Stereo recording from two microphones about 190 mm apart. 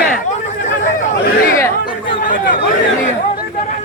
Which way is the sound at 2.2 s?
45° left (ahead or behind).